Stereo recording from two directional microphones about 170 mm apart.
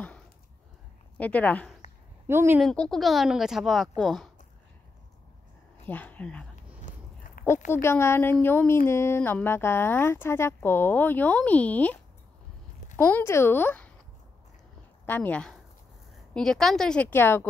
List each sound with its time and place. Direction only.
1.1 s a woman's voice: 10° left (ahead or behind)
2.2 s a woman's voice: 15° right (ahead or behind)
2.6 s a woman's voice: 5° left (ahead or behind)
5.9 s speech: 10° left (ahead or behind)
6.9 s a sound: 55° left (ahead or behind)
7.7 s speech: 15° left (ahead or behind)
15.0 s a woman's voice: 10° left (ahead or behind)